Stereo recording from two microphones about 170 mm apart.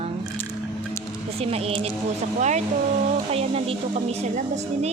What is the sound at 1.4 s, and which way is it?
Speech, 35° right (ahead or behind).